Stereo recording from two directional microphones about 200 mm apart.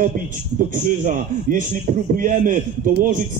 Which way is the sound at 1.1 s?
40° right (ahead or behind).